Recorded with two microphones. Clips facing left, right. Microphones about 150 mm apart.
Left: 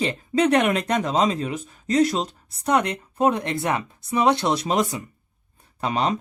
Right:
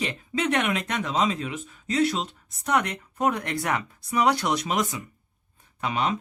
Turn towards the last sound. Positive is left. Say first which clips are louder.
# left 3 dB
turn(degrees=35)  # may be behind; listen again after turning